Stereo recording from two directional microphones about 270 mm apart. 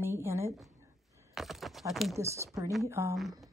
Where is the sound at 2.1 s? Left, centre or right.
Centre.